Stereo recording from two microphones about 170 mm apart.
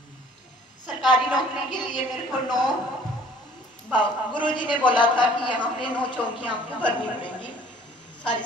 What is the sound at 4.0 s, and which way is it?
A man's voice, 25° left (ahead or behind).